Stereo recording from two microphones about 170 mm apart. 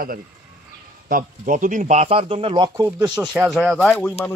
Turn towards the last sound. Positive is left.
turn(degrees=10)  # may be behind; listen again after turning